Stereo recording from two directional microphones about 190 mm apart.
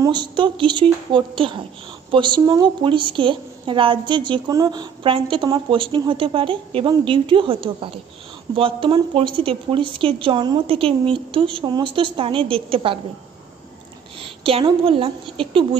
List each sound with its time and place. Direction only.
0.0 s a woman's voice: 25° right (ahead or behind)
14.1 s a woman's voice: 30° right (ahead or behind)